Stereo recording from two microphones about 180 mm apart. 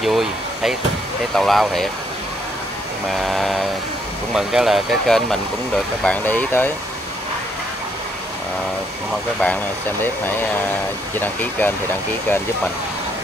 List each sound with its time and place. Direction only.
0.0 s speech: centre (ahead or behind)
3.1 s speech: centre (ahead or behind)
10.0 s speech: 10° left (ahead or behind)